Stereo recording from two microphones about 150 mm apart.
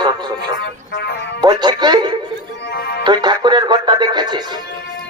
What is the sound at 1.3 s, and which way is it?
Speech, 30° right (ahead or behind).